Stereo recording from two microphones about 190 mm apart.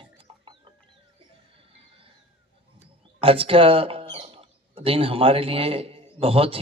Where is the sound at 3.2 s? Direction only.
30° right (ahead or behind).